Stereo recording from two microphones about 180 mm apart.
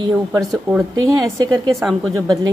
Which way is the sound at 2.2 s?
20° right (ahead or behind).